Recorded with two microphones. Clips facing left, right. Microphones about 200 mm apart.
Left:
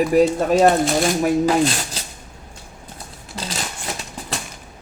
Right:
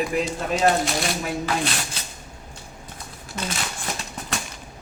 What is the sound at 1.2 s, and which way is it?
Speech, 40° left (ahead or behind).